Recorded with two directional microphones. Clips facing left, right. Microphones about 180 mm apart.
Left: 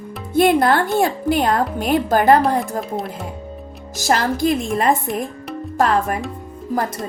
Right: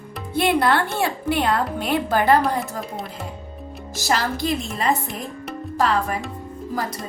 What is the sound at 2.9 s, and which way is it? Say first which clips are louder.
Speech: left 6 dB; centre (ahead or behind).